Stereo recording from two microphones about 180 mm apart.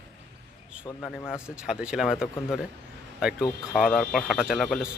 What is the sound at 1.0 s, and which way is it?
Speech, centre (ahead or behind).